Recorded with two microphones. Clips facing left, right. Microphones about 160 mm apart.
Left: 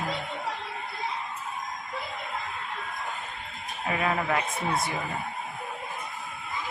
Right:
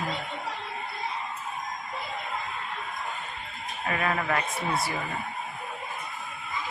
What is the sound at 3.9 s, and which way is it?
Speech, 10° left (ahead or behind).